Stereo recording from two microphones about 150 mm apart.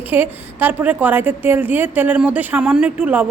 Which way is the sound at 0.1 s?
15° right (ahead or behind).